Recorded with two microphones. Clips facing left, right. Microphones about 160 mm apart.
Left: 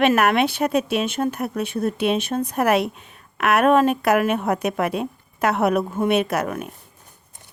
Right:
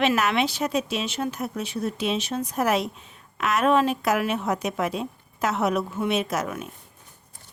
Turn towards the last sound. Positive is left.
turn(degrees=55)  # may be behind; listen again after turning